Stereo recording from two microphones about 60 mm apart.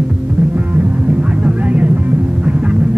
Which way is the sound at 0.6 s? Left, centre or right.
Right.